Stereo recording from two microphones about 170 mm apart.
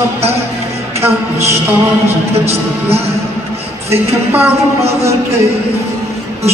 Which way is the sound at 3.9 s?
15° right (ahead or behind).